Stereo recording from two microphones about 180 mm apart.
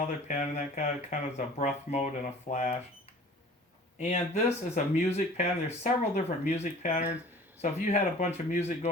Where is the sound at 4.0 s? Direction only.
40° left (ahead or behind).